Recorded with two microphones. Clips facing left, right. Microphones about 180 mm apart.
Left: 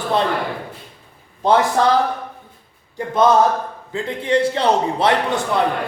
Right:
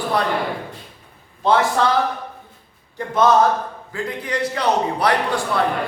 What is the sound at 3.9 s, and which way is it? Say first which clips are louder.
A man's voice: left 7 dB; 25° left (ahead or behind).